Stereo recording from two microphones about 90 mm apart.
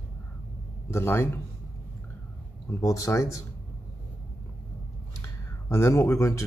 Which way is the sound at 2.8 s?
40° left (ahead or behind).